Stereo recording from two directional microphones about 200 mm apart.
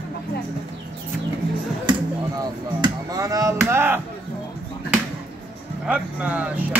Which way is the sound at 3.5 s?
10° right (ahead or behind).